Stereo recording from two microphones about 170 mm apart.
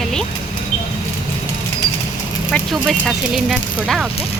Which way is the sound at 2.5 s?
Centre (ahead or behind).